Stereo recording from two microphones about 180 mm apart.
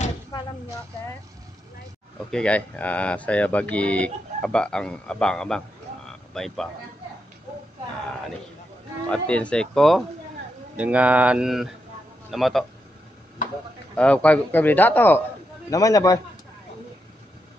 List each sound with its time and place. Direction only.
2.3 s speech: 5° left (ahead or behind)
9.1 s speech: 5° left (ahead or behind)
13.9 s a man's voice: 5° left (ahead or behind)